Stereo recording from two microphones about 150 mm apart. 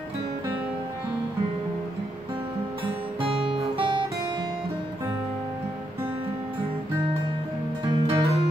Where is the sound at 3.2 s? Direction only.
35° right (ahead or behind).